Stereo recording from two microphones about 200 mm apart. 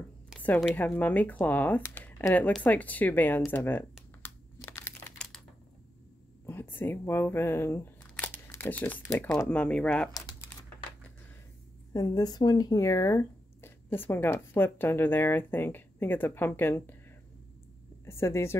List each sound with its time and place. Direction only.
0.4 s a sound: 5° left (ahead or behind)
0.7 s speech: 5° left (ahead or behind)
4.2 s crumpling: 10° left (ahead or behind)
6.4 s speech: 10° left (ahead or behind)
10.1 s typing: 20° left (ahead or behind)
11.9 s speech: 20° left (ahead or behind)
18.0 s a woman's voice: 15° left (ahead or behind)